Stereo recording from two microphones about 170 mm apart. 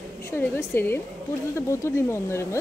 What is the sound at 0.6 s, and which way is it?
Speech, 15° left (ahead or behind).